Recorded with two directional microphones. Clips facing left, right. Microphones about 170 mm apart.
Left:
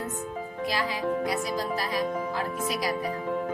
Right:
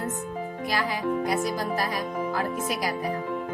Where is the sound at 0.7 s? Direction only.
50° right (ahead or behind).